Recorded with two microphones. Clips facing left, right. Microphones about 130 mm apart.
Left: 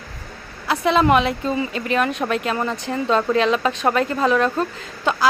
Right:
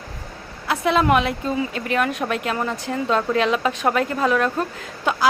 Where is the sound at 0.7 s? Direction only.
5° right (ahead or behind).